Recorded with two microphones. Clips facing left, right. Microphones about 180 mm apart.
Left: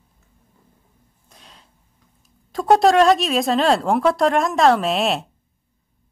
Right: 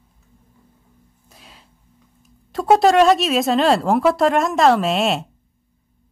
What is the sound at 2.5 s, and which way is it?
Speech, centre (ahead or behind).